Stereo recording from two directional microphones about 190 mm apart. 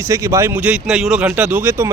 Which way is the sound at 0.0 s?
15° right (ahead or behind).